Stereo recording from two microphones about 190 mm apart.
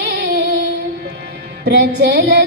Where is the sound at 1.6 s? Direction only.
60° right (ahead or behind).